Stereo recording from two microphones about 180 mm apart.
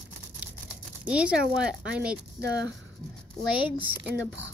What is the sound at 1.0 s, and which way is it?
A woman's voice, 5° right (ahead or behind).